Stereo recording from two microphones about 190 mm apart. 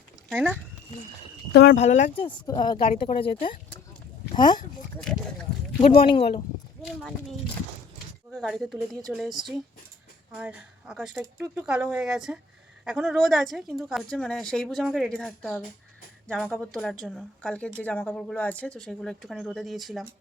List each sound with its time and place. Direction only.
0.3 s speech: 5° right (ahead or behind)
1.7 s speech: 40° left (ahead or behind)
2.5 s speech: 20° left (ahead or behind)
5.8 s speech: 30° left (ahead or behind)
6.8 s a woman's voice: centre (ahead or behind)